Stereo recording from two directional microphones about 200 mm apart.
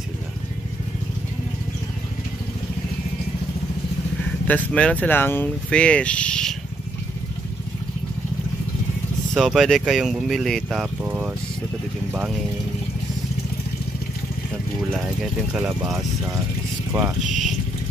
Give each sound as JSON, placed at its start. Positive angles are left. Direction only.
{"t": 4.5, "sound": "speech", "side_deg": 5}
{"t": 9.3, "sound": "speech", "side_deg": 0}
{"t": 15.5, "sound": "speech", "side_deg": -5}
{"t": 17.3, "sound": "a sound", "side_deg": 0}